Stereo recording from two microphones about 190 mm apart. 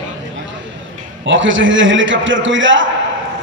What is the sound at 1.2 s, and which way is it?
A man's voice, 80° right.